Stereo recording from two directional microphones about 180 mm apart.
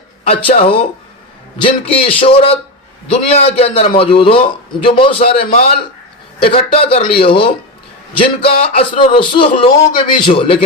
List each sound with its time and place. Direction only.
0.3 s a man's voice: 35° left (ahead or behind)